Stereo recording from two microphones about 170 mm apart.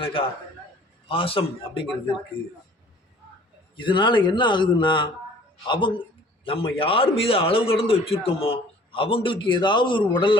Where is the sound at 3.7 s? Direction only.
30° left (ahead or behind).